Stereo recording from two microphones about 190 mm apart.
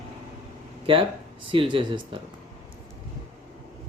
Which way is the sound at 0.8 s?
30° right (ahead or behind).